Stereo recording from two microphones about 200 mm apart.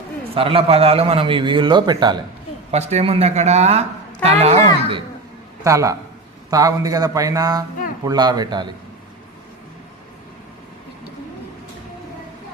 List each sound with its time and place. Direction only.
0.3 s a man's voice: 30° right (ahead or behind)
2.7 s speech: 35° right (ahead or behind)
5.6 s a man's voice: 15° right (ahead or behind)